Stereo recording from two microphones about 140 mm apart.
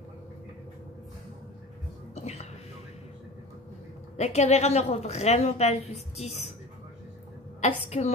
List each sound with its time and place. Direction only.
4.2 s a woman's voice: 50° left (ahead or behind)
7.6 s a woman's voice: 50° left (ahead or behind)